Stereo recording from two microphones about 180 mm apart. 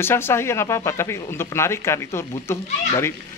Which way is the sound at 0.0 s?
15° left (ahead or behind).